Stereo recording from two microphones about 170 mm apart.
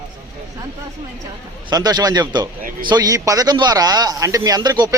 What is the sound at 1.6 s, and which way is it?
Speech, 25° right (ahead or behind).